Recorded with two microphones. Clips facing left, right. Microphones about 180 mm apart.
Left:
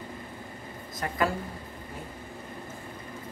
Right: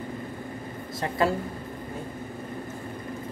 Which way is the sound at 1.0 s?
30° right (ahead or behind).